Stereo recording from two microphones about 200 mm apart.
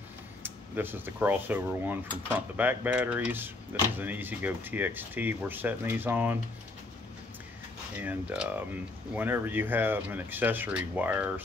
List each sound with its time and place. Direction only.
0.4 s speech: 10° right (ahead or behind)
8.0 s speech: 10° right (ahead or behind)